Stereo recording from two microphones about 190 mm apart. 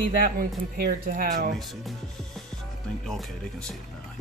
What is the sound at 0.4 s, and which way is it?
Speech, 55° right (ahead or behind).